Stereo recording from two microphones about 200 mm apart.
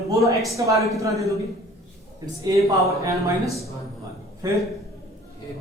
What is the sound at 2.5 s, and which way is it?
Speech, 15° right (ahead or behind).